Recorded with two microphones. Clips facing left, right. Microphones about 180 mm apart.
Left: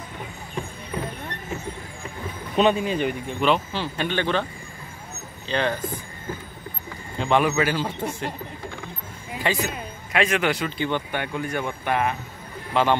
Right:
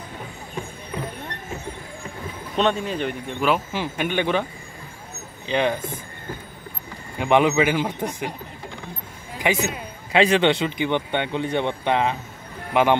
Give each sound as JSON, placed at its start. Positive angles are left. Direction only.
{"t": 2.5, "sound": "speech", "side_deg": 5}
{"t": 5.5, "sound": "speech", "side_deg": -15}
{"t": 7.2, "sound": "speech", "side_deg": -15}
{"t": 9.4, "sound": "speech", "side_deg": -20}
{"t": 10.1, "sound": "speech", "side_deg": -30}